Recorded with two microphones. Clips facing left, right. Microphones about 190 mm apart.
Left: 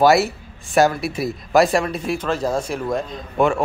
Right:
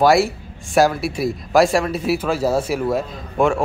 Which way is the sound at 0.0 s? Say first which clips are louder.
Even; centre (ahead or behind).